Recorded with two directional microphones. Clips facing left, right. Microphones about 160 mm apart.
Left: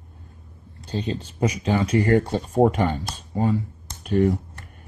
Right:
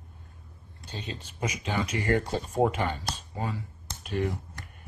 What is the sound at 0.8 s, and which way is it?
Speech, 35° left (ahead or behind).